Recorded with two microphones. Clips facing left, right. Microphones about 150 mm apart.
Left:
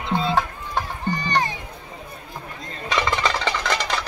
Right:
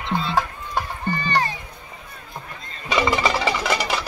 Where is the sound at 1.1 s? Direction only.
15° left (ahead or behind).